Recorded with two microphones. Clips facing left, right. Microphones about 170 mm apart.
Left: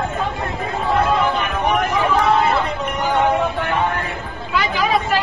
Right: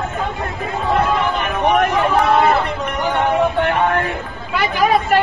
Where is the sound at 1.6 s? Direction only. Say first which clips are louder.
Right 5 dB; 65° right (ahead or behind).